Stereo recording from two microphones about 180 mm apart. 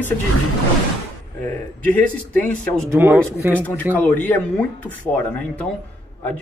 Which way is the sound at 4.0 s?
10° left (ahead or behind).